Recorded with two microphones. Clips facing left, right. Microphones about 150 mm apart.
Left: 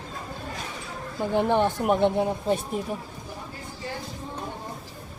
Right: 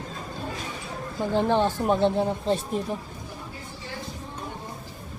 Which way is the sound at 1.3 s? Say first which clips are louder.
Even; 15° left (ahead or behind).